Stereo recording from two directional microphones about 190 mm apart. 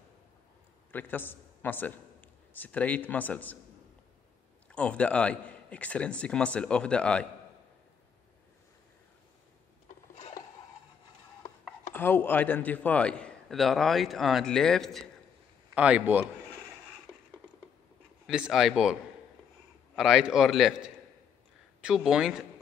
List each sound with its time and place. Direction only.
0.9 s a man's voice: 10° left (ahead or behind)
4.6 s a man's voice: 5° left (ahead or behind)
10.1 s filing: 35° left (ahead or behind)
11.9 s a man's voice: 10° left (ahead or behind); by 16.3 s 10° right (ahead or behind)
18.2 s a man's voice: 5° right (ahead or behind)
20.0 s a man's voice: 5° right (ahead or behind)
21.8 s a man's voice: 5° right (ahead or behind)